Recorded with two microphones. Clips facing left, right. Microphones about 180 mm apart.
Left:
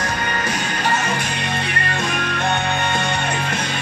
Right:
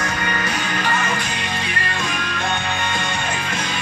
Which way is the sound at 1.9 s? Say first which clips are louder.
Left 3 dB; 60° left (ahead or behind).